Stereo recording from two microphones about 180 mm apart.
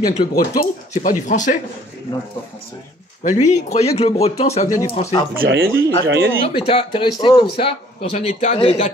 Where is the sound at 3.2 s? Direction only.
40° left (ahead or behind).